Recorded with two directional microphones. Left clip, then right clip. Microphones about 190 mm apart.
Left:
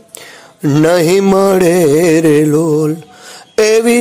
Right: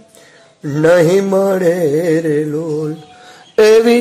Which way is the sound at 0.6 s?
35° left (ahead or behind).